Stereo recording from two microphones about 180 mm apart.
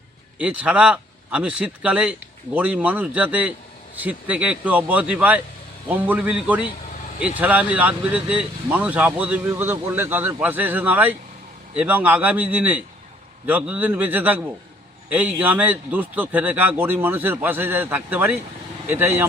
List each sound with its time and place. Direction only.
0.3 s speech: 5° right (ahead or behind)